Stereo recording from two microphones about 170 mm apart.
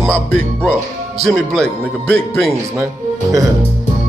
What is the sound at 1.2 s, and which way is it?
Speech, centre (ahead or behind).